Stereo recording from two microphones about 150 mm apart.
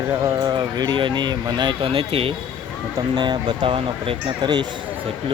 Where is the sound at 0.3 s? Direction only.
25° right (ahead or behind).